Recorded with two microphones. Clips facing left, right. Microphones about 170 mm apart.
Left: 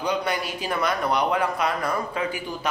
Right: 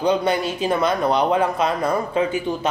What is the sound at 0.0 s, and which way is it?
Speech, 25° right (ahead or behind).